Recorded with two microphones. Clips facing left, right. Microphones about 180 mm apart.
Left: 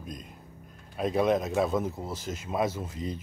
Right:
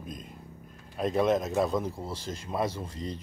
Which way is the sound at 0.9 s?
Centre (ahead or behind).